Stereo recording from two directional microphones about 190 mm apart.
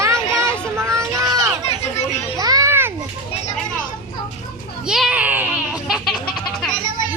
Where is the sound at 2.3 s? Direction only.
20° right (ahead or behind).